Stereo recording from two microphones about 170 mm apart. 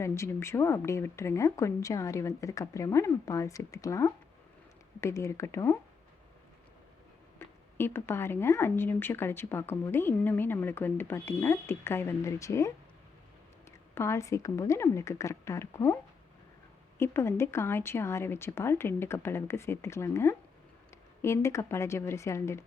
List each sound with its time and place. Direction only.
0.0 s speech: 15° left (ahead or behind)
7.3 s speech: 15° left (ahead or behind)
17.0 s speech: 15° left (ahead or behind)